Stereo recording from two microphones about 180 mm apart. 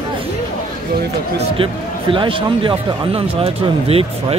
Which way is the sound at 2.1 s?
30° right (ahead or behind).